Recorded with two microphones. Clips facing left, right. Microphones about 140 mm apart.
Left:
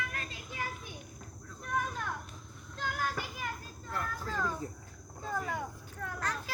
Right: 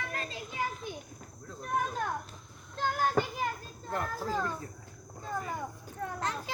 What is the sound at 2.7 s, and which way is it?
Child singing, 35° right (ahead or behind).